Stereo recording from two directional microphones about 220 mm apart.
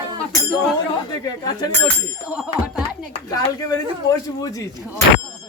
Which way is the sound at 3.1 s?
15° left (ahead or behind).